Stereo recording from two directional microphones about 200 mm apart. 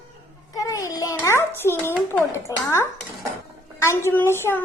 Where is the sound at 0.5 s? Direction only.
15° left (ahead or behind).